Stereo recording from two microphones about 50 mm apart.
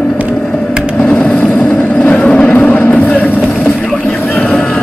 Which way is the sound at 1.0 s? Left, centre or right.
Left.